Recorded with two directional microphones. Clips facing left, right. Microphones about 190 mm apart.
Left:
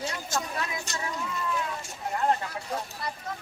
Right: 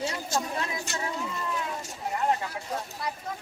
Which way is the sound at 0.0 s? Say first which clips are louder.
Right 2 dB; 30° right (ahead or behind).